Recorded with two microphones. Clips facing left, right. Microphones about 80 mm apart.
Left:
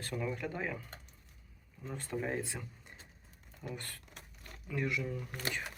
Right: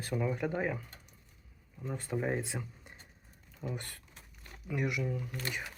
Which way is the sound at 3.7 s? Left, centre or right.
Right.